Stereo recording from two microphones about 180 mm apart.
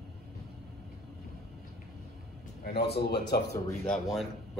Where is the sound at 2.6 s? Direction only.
65° left (ahead or behind).